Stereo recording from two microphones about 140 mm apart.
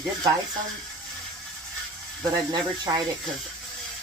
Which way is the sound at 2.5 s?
30° right (ahead or behind).